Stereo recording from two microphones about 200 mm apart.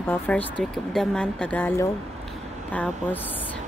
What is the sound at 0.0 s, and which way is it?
Speech, 10° left (ahead or behind).